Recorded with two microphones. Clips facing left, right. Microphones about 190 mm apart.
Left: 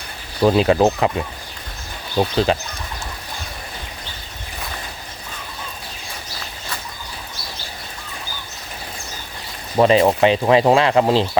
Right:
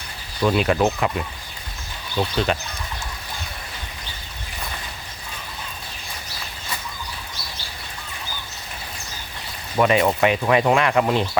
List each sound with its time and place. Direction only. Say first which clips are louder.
0.4 s speech: left 5 dB; 30° left (ahead or behind)
2.1 s speech: left 4 dB; 35° left (ahead or behind)
9.7 s speech: left 4 dB; 30° left (ahead or behind)